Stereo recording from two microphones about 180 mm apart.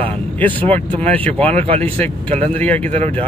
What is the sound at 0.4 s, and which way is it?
Speech, 10° left (ahead or behind).